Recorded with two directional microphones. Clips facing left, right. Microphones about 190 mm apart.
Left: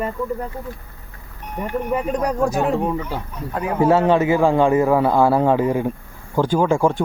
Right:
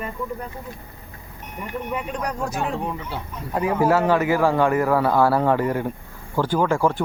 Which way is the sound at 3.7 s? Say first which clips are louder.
Left 4 dB; 25° left (ahead or behind).